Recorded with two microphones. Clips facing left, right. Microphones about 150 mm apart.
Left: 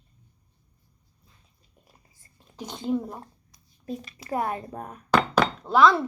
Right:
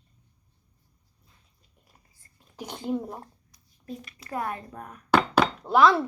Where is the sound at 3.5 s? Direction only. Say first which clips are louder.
Left 5 dB; 25° left (ahead or behind).